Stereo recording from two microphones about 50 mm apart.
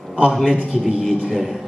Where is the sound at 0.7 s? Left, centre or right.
Centre.